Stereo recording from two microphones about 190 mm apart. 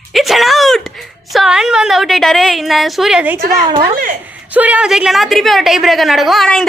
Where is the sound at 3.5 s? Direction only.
25° right (ahead or behind).